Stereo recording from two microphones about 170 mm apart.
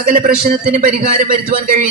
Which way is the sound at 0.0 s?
55° right (ahead or behind).